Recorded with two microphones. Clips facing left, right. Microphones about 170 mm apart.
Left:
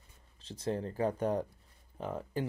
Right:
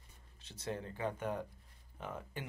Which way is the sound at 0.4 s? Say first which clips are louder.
Left 7 dB; 30° left (ahead or behind).